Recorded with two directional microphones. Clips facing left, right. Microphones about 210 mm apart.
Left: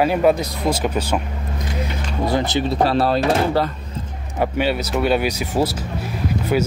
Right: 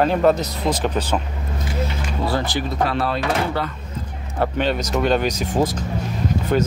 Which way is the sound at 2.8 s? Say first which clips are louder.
Left 4 dB; 35° left (ahead or behind).